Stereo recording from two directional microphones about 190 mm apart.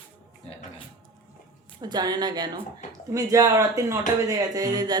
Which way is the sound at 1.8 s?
20° right (ahead or behind).